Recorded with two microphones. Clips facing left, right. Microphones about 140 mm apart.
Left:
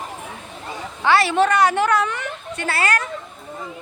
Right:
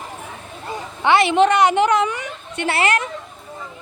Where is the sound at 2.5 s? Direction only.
25° right (ahead or behind).